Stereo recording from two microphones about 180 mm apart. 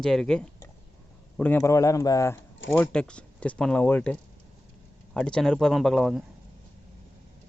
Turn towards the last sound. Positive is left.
turn(degrees=0)  # may be behind; listen again after turning